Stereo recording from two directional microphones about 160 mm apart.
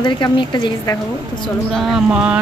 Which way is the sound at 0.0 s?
30° left (ahead or behind).